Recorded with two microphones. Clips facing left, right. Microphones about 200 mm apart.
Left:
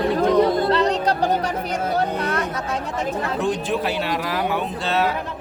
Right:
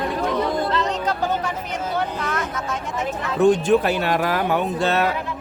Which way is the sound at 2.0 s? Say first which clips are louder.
Left 3 dB; 35° left (ahead or behind).